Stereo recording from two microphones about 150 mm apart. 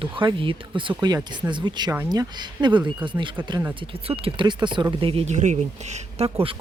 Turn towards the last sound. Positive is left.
turn(degrees=-45)  # may be behind; listen again after turning